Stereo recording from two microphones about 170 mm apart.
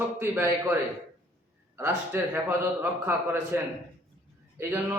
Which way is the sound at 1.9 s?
15° right (ahead or behind).